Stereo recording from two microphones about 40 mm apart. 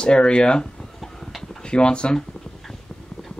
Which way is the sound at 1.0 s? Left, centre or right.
Centre.